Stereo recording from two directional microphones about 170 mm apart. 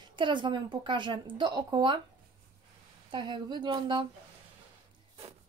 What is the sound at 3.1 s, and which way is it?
Speech, 25° right (ahead or behind).